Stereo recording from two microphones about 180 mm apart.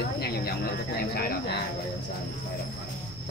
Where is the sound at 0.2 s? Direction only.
60° left (ahead or behind).